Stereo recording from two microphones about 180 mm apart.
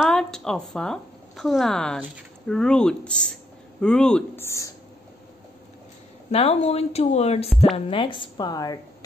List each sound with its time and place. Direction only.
0.0 s speech: 5° left (ahead or behind)
4.5 s speech: 15° left (ahead or behind)
6.3 s a woman's voice: 35° left (ahead or behind)